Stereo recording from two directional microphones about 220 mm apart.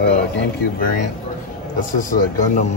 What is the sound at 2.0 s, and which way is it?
Speech, 35° left (ahead or behind).